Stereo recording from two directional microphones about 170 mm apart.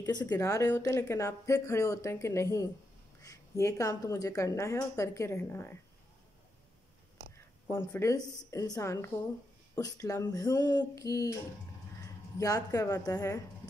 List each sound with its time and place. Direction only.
0.3 s a woman's voice: 20° left (ahead or behind)
7.6 s a woman's voice: 15° left (ahead or behind)
12.4 s a woman's voice: 20° left (ahead or behind)